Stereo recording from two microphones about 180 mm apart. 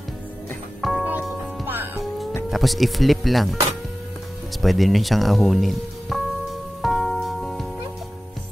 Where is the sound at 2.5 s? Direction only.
Centre (ahead or behind).